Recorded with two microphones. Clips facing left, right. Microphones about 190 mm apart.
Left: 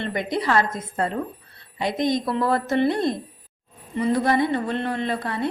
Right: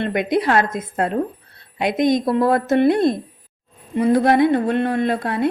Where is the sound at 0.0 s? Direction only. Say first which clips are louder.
Right 6 dB; 55° right (ahead or behind).